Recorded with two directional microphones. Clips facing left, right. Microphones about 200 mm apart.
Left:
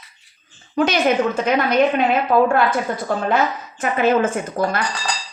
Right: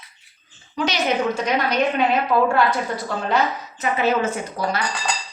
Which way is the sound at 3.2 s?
50° left (ahead or behind).